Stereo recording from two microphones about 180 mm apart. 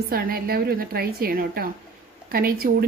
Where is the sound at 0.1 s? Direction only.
55° right (ahead or behind).